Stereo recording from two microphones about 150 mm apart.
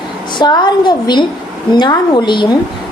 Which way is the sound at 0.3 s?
30° left (ahead or behind).